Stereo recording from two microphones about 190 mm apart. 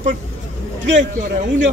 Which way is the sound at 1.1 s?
40° right (ahead or behind).